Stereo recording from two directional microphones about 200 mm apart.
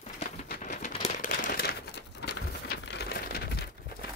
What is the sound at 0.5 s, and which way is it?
Crumpling, 40° left (ahead or behind).